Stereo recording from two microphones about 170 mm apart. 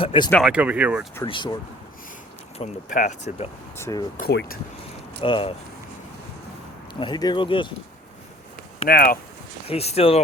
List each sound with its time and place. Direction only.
0.0 s speech: 30° left (ahead or behind)
0.4 s speech: 5° right (ahead or behind)
1.2 s speech: 25° left (ahead or behind)
2.6 s speech: 35° left (ahead or behind)
2.9 s speech: 45° left (ahead or behind)
3.8 s speech: 15° left (ahead or behind)
4.2 s speech: 70° left (ahead or behind)
5.2 s speech: 30° left (ahead or behind)
7.0 s speech: 25° left (ahead or behind)
8.9 s speech: 65° left (ahead or behind)
9.6 s speech: 35° left (ahead or behind)